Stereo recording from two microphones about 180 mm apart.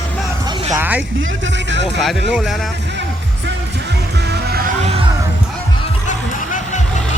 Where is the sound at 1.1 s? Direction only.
90° right.